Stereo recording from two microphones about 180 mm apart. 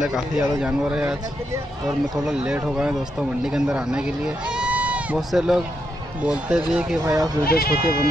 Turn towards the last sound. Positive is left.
turn(degrees=55)  # may be behind; listen again after turning